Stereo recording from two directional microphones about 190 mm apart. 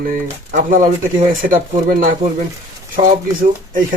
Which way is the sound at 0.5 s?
45° right (ahead or behind).